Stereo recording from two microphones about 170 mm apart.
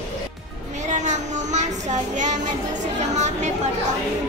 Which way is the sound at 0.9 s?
45° right (ahead or behind).